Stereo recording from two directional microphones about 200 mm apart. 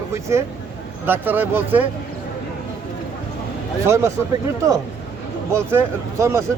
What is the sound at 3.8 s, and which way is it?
Speech, 15° right (ahead or behind).